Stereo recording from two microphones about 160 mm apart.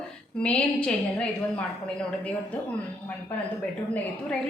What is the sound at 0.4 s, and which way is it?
A woman's voice, 5° left (ahead or behind).